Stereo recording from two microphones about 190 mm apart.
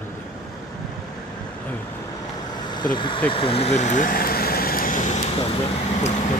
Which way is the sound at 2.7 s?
25° left (ahead or behind).